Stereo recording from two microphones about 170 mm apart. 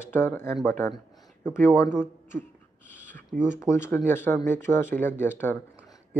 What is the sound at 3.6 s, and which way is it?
Speech, 15° left (ahead or behind).